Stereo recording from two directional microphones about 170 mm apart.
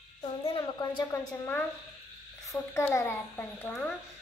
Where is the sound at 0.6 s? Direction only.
20° left (ahead or behind).